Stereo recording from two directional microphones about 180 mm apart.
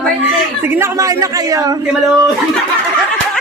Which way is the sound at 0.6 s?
15° right (ahead or behind).